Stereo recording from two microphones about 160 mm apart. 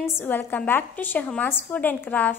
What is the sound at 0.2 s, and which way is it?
A woman's voice, 10° left (ahead or behind).